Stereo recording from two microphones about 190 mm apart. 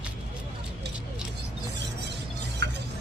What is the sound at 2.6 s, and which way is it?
Music, 65° right (ahead or behind).